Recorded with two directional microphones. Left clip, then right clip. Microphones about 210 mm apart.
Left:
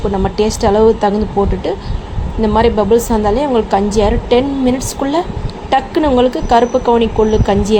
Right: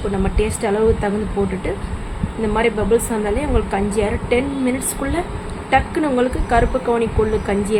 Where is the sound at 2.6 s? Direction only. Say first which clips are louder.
Left 6 dB; 25° left (ahead or behind).